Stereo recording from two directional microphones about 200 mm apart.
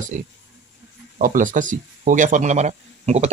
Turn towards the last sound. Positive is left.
turn(degrees=-35)  # may be behind; listen again after turning